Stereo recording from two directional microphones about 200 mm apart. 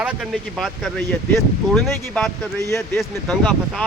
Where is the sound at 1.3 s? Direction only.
Centre (ahead or behind).